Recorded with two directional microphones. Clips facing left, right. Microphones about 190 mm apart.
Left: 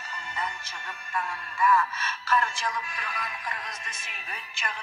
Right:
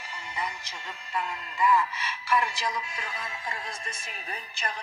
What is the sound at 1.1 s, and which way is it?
A man's voice, 20° right (ahead or behind).